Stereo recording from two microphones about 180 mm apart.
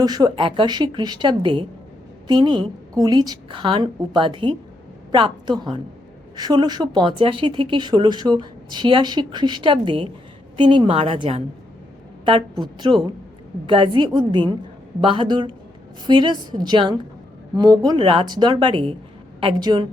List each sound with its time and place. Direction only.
0.0 s speech: 20° right (ahead or behind)